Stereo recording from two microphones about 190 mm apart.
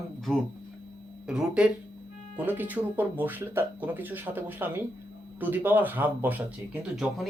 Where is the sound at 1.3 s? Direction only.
5° right (ahead or behind).